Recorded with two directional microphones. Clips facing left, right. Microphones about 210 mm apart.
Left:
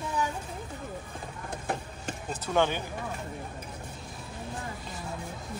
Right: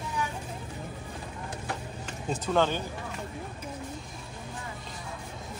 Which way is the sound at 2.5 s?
15° left (ahead or behind).